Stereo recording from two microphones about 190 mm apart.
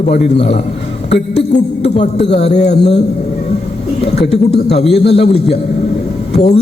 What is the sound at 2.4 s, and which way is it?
Speech, 35° left (ahead or behind).